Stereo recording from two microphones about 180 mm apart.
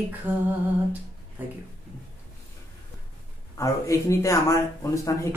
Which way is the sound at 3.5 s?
15° left (ahead or behind).